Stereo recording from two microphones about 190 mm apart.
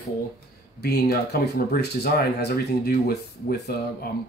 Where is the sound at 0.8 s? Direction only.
60° left (ahead or behind).